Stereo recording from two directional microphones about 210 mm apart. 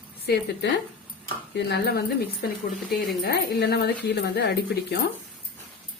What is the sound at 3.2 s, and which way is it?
Speech, 50° left (ahead or behind).